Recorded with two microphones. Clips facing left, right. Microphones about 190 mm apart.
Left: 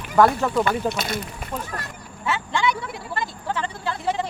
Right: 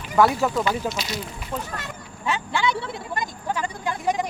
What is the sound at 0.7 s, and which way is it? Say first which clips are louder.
Speech: left 2 dB; 55° left (ahead or behind).